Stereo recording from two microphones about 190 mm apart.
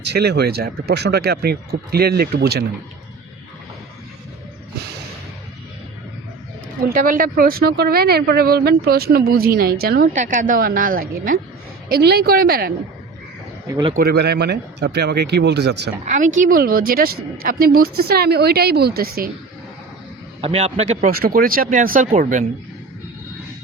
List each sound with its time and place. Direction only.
0.0 s speech: 60° right (ahead or behind)
6.9 s a woman's voice: 45° right (ahead or behind)
11.9 s a woman's voice: 60° right (ahead or behind)
13.7 s speech: 20° right (ahead or behind)
13.9 s speech: 55° right (ahead or behind)
16.0 s a woman's voice: 40° right (ahead or behind)
20.4 s a man's voice: 30° right (ahead or behind)
21.1 s a woman's voice: 50° right (ahead or behind)